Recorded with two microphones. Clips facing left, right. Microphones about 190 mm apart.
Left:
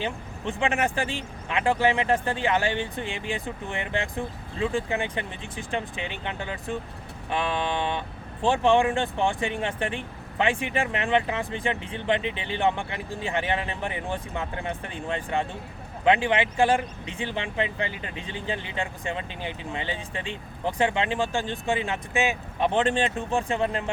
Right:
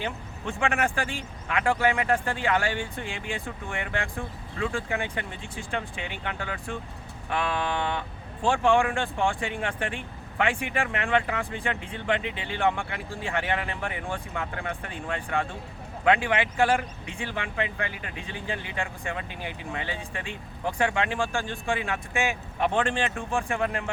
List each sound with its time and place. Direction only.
0.0 s speech: 20° left (ahead or behind)